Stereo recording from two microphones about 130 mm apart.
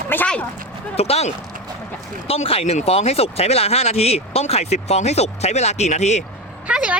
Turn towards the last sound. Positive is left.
turn(degrees=-5)  # may be behind; listen again after turning